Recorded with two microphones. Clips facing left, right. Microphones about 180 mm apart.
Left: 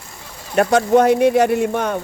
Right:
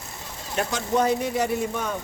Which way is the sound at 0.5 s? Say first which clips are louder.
Left 11 dB; 65° left (ahead or behind).